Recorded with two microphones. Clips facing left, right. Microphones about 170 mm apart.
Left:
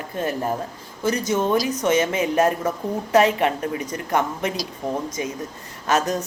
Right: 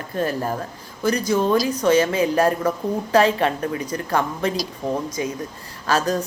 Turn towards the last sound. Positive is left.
turn(degrees=20)  # may be behind; listen again after turning